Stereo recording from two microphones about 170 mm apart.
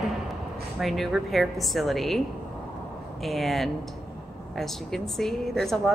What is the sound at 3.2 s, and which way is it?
A woman's voice, centre (ahead or behind).